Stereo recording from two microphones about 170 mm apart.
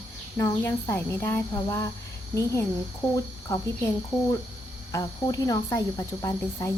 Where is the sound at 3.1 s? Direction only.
20° left (ahead or behind).